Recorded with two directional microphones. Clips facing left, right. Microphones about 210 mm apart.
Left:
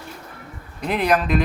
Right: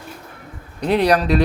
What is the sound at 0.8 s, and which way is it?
Speech, 35° right (ahead or behind).